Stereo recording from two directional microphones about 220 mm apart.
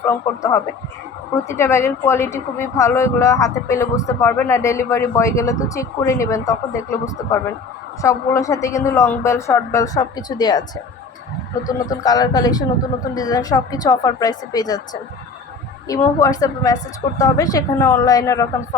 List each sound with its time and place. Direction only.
0.0 s a woman's voice: 15° left (ahead or behind)
11.7 s a woman's voice: 15° left (ahead or behind)
15.9 s a woman's voice: 15° left (ahead or behind)